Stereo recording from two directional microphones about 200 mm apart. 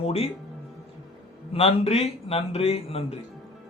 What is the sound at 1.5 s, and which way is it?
Speech, 30° left (ahead or behind).